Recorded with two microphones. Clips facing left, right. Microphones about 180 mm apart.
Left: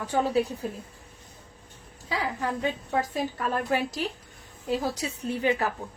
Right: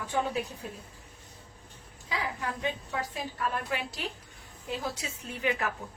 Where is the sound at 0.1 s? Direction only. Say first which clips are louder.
Left 6 dB; 35° left (ahead or behind).